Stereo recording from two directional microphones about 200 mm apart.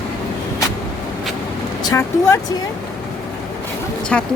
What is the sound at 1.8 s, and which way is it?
Vehicle, 15° left (ahead or behind).